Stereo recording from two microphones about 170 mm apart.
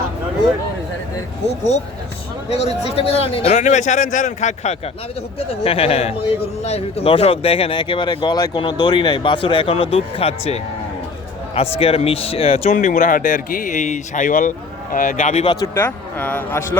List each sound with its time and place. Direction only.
2.5 s speech: 40° left (ahead or behind)
15.6 s speech: 15° left (ahead or behind)